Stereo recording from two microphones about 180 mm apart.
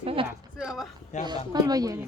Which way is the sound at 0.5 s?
5° right (ahead or behind).